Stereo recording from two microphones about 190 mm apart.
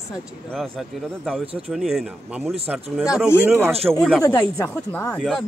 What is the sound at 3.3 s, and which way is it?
Speech, 10° right (ahead or behind).